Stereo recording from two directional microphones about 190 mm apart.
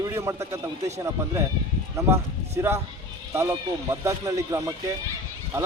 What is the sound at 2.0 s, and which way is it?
A man's voice, 15° right (ahead or behind).